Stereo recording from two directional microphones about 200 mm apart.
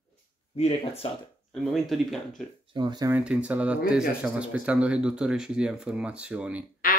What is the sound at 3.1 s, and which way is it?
Speech, 5° right (ahead or behind).